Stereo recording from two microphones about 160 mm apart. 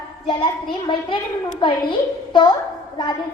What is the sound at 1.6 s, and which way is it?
Speech, 30° left (ahead or behind).